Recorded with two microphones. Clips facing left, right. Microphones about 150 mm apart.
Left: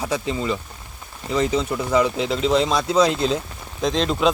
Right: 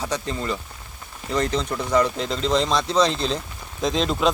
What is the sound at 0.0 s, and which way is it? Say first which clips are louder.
Speech: left 3 dB; 5° left (ahead or behind).